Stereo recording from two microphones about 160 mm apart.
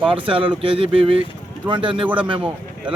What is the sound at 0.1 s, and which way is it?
Speech, 35° right (ahead or behind).